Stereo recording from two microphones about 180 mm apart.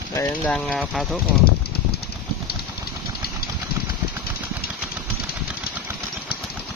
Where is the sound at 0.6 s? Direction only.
Centre (ahead or behind).